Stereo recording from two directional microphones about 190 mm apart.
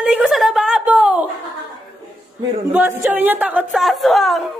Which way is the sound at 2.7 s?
10° right (ahead or behind).